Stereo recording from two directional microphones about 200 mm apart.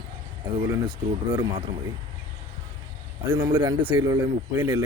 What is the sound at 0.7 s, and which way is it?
Speech, 20° right (ahead or behind).